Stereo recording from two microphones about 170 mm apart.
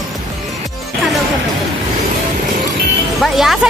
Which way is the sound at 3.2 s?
Centre (ahead or behind).